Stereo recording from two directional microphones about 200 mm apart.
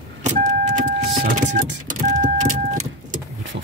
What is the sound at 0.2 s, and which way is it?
Vehicle, 35° right (ahead or behind).